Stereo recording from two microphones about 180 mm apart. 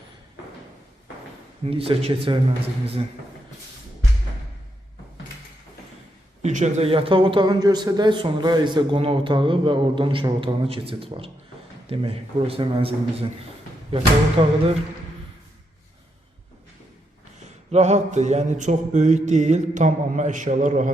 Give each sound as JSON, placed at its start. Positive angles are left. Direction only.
{"t": 1.6, "sound": "mantra", "side_deg": -30}
{"t": 6.4, "sound": "speech", "side_deg": -40}
{"t": 11.9, "sound": "mantra", "side_deg": -30}
{"t": 17.7, "sound": "mantra", "side_deg": -40}